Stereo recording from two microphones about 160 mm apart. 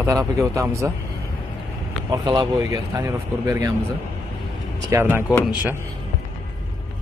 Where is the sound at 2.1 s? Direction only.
30° right (ahead or behind).